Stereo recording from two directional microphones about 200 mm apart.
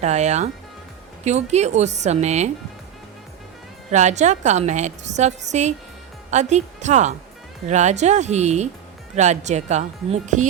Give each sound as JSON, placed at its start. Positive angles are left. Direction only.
{"t": 0.0, "sound": "a woman's voice", "side_deg": -35}
{"t": 3.9, "sound": "a woman's voice", "side_deg": -35}